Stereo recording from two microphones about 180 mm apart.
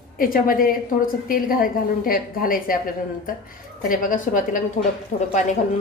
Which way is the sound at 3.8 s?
50° left (ahead or behind).